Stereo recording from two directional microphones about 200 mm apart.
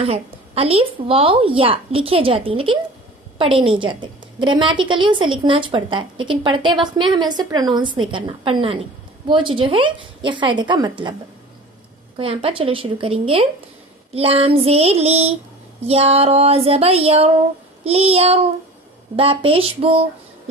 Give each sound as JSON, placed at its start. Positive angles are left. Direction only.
{"t": 0.0, "sound": "a woman's voice", "side_deg": -30}
{"t": 12.2, "sound": "a woman's voice", "side_deg": -30}
{"t": 14.1, "sound": "a sound", "side_deg": -30}
{"t": 15.9, "sound": "a woman's voice", "side_deg": -30}
{"t": 17.8, "sound": "a sound", "side_deg": -30}
{"t": 19.1, "sound": "a woman's voice", "side_deg": -25}